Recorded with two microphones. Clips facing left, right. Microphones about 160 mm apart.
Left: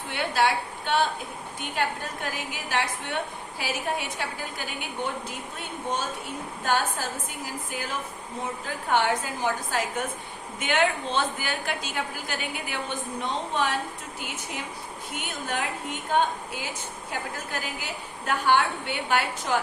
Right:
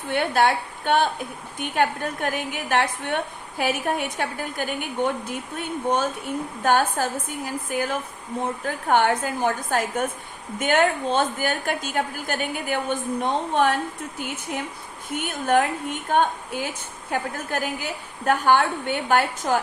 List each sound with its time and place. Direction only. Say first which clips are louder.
0.1 s a woman's voice: right 4 dB; 50° right (ahead or behind)
15.1 s a woman's voice: right 11 dB; 50° right (ahead or behind)